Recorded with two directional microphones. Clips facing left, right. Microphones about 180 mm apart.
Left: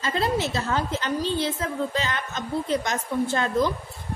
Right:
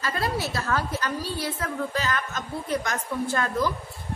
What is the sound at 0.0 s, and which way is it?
A woman's voice, 25° left (ahead or behind).